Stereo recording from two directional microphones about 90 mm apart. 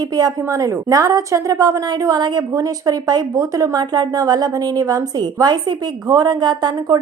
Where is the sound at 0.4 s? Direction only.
35° right (ahead or behind).